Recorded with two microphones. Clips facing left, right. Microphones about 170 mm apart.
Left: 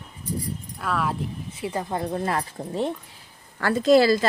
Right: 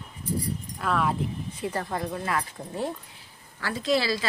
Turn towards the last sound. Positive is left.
turn(degrees=45)  # may be behind; listen again after turning